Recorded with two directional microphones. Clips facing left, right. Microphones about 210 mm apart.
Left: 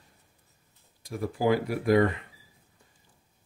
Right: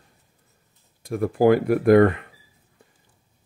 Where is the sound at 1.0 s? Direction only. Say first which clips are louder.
Right 9 dB; 55° right (ahead or behind).